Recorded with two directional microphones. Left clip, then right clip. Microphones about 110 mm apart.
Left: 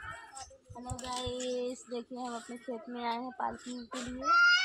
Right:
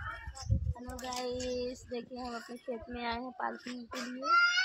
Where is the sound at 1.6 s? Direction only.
15° right (ahead or behind).